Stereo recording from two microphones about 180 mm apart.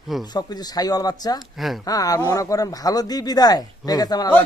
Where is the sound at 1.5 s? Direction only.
Centre (ahead or behind).